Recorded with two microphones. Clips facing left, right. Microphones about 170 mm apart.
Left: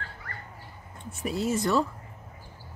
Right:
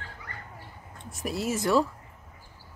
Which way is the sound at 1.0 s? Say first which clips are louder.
Left 2 dB; centre (ahead or behind).